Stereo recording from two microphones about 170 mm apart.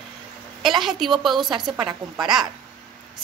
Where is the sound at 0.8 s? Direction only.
Centre (ahead or behind).